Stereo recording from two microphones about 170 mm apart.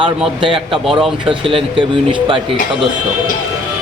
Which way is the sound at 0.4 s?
30° right (ahead or behind).